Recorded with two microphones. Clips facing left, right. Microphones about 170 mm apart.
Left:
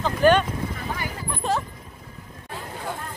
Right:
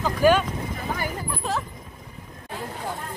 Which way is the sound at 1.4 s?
Centre (ahead or behind).